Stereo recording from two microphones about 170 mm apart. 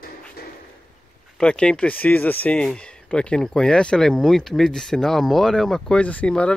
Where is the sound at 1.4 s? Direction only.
5° left (ahead or behind).